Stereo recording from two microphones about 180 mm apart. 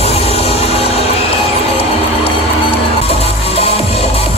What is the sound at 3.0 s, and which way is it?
Music, 35° left (ahead or behind).